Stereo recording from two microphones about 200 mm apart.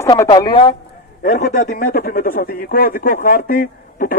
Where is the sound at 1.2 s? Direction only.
40° left (ahead or behind).